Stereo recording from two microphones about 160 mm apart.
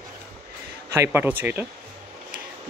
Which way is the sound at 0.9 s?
15° right (ahead or behind).